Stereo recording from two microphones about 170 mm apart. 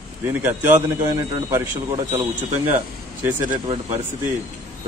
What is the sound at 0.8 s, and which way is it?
A man's voice, 20° right (ahead or behind).